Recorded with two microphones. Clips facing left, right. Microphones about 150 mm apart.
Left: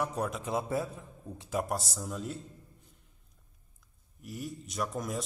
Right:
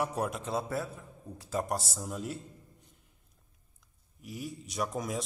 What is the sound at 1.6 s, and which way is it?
Speech, centre (ahead or behind).